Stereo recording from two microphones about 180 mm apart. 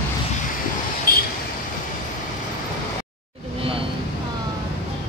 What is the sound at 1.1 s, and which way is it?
Vehicle, 55° left (ahead or behind).